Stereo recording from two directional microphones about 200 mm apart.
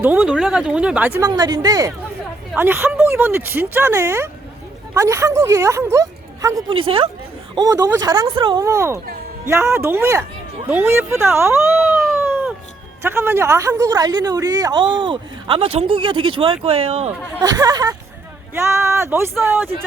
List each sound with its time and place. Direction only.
0.0 s speech: 5° right (ahead or behind)
1.2 s a woman's voice: 20° right (ahead or behind)
12.2 s a sound: 10° right (ahead or behind)
13.0 s a woman's voice: 10° right (ahead or behind); by 17.1 s 30° right (ahead or behind)
17.4 s a woman's voice: 20° right (ahead or behind)